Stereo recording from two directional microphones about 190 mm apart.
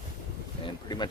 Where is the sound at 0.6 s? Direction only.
20° left (ahead or behind).